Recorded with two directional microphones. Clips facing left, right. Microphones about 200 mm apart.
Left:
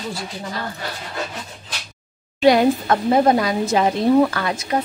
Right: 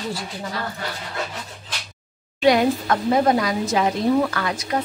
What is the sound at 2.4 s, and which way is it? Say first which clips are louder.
A woman's voice: left 3 dB; 30° left (ahead or behind).